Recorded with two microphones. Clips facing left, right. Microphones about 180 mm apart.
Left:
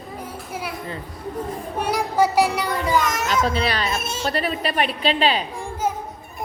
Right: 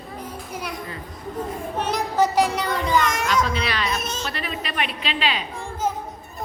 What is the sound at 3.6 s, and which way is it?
Speech, 30° left (ahead or behind).